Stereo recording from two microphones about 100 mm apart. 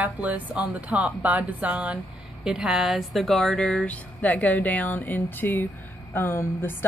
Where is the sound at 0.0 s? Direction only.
15° right (ahead or behind); by 5.7 s 20° left (ahead or behind).